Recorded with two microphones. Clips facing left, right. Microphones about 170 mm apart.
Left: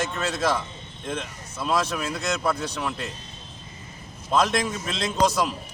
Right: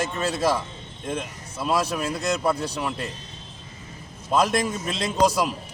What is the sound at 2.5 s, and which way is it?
Speech, 35° right (ahead or behind).